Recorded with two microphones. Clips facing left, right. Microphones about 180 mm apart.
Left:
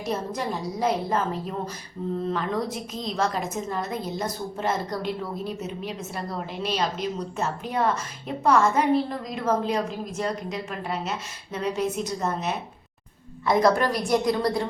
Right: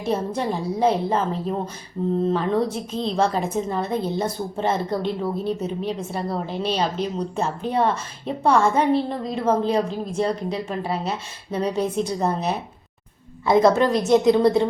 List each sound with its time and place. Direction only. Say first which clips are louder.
0.0 s a woman's voice: right 5 dB; 30° right (ahead or behind)